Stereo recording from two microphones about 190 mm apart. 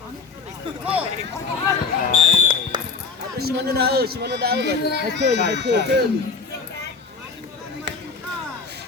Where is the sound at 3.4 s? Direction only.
55° right (ahead or behind).